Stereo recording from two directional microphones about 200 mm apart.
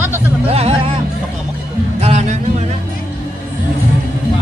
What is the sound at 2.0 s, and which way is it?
Music, 35° right (ahead or behind).